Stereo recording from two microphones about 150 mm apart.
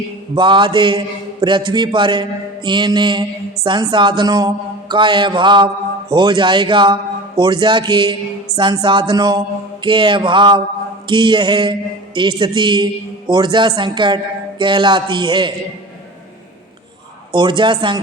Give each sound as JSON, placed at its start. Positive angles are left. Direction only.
{"t": 0.3, "sound": "mantra", "side_deg": -30}
{"t": 17.3, "sound": "mantra", "side_deg": -30}